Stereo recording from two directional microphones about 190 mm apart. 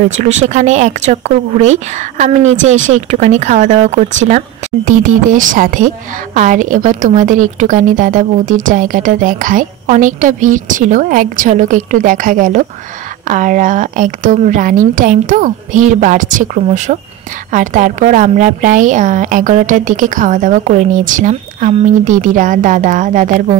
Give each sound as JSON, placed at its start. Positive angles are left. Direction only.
{"t": 0.5, "sound": "a woman's voice", "side_deg": -40}